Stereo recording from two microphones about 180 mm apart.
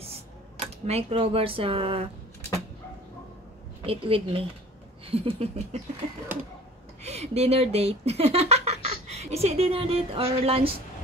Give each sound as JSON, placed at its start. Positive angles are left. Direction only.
{"t": 0.6, "sound": "speech", "side_deg": -30}
{"t": 3.8, "sound": "speech", "side_deg": -30}
{"t": 7.0, "sound": "speech", "side_deg": -35}